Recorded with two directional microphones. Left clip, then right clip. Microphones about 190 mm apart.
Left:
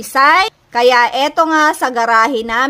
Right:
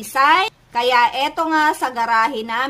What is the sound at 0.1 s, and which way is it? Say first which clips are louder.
A woman's voice: left 4 dB; 40° left (ahead or behind).